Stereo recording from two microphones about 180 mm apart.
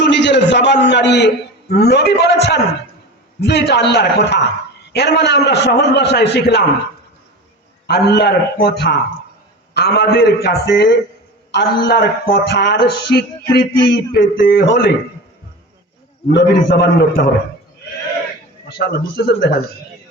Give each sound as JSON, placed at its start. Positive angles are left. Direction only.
{"t": 0.0, "sound": "a man's voice", "side_deg": 80}
{"t": 7.9, "sound": "a man's voice", "side_deg": 65}
{"t": 16.6, "sound": "a man's voice", "side_deg": 60}
{"t": 18.7, "sound": "a man's voice", "side_deg": 65}